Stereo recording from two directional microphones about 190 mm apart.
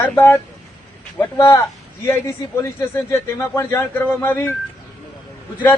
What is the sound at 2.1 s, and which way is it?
Speech, 15° left (ahead or behind).